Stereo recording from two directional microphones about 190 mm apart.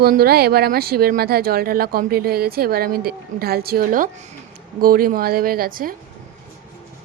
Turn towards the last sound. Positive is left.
turn(degrees=-50)  # may be behind; listen again after turning